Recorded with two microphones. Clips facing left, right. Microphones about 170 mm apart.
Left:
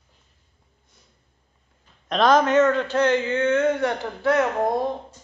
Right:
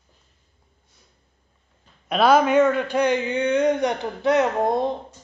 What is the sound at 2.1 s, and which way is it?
A man's voice, 10° right (ahead or behind).